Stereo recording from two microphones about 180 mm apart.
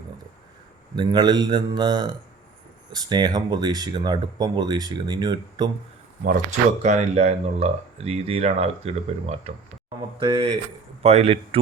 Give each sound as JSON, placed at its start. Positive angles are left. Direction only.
{"t": 0.9, "sound": "speech", "side_deg": -25}
{"t": 6.8, "sound": "speech", "side_deg": -35}